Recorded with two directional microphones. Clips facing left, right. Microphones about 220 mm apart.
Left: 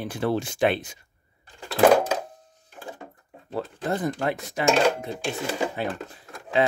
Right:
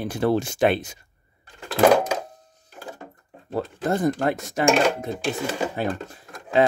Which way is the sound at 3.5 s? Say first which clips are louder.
Right 3 dB; 45° right (ahead or behind).